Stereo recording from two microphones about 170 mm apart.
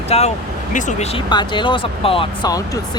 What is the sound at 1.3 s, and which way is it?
Speech, 25° left (ahead or behind).